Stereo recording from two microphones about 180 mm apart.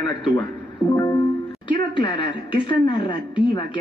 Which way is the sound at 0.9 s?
20° left (ahead or behind).